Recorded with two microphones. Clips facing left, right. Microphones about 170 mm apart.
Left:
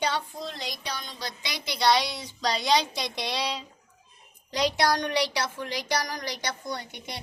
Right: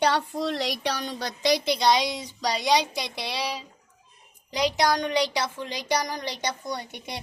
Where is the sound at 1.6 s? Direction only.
20° right (ahead or behind).